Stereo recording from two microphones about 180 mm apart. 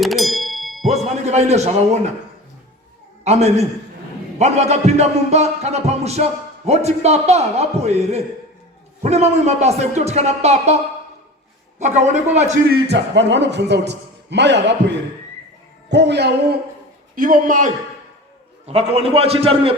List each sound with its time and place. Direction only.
0.0 s ding: centre (ahead or behind)
0.9 s speech: 40° right (ahead or behind)
3.2 s music: 40° right (ahead or behind)
11.8 s music: 40° right (ahead or behind)
12.9 s a man's voice: 80° right
17.2 s a man's voice: 50° right (ahead or behind)
18.6 s music: 35° right (ahead or behind)